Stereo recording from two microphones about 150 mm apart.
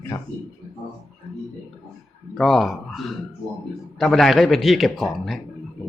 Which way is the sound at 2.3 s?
Centre (ahead or behind).